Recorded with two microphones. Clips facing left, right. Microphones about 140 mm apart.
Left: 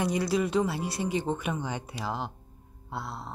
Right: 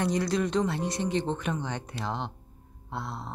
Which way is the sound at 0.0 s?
5° left (ahead or behind).